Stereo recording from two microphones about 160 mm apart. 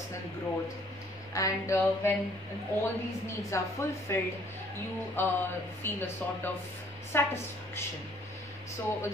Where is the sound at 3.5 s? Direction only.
20° left (ahead or behind).